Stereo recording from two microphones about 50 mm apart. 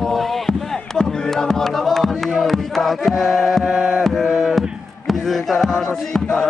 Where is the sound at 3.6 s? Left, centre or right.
Right.